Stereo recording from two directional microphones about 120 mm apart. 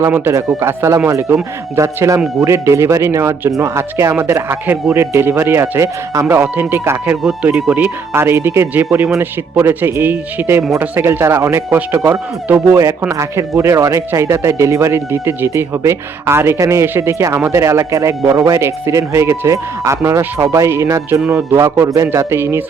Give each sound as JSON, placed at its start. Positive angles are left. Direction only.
{"t": 0.0, "sound": "speech", "side_deg": -20}
{"t": 7.1, "sound": "speech", "side_deg": -10}